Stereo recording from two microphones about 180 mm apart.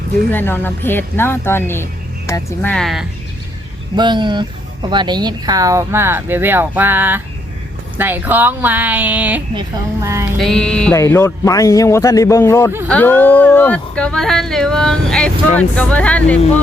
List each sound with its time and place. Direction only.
0.3 s speech: 10° left (ahead or behind)
3.9 s speech: 25° right (ahead or behind)
10.3 s music: centre (ahead or behind)
10.9 s speech: 15° left (ahead or behind)